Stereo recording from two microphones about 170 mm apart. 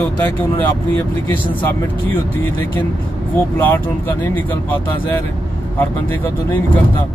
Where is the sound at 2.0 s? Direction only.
10° left (ahead or behind).